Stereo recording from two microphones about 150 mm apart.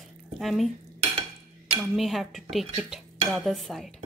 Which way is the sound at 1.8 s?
Centre (ahead or behind).